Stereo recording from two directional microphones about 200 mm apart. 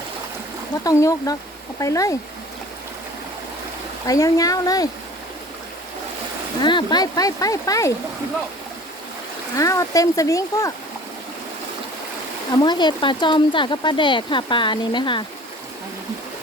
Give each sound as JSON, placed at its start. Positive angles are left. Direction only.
{"t": 0.9, "sound": "speech", "side_deg": 15}
{"t": 4.0, "sound": "speech", "side_deg": 15}
{"t": 6.6, "sound": "speech", "side_deg": 20}
{"t": 9.6, "sound": "speech", "side_deg": 15}
{"t": 12.5, "sound": "speech", "side_deg": 20}